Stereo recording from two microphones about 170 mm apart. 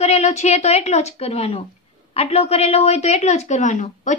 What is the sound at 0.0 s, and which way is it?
A woman's voice, 40° left (ahead or behind).